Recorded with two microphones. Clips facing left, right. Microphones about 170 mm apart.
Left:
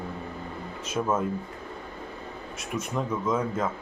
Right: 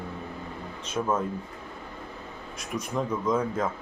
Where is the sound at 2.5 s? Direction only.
5° left (ahead or behind).